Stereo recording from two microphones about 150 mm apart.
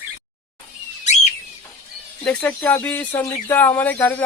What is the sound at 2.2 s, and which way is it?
Speech, 10° left (ahead or behind).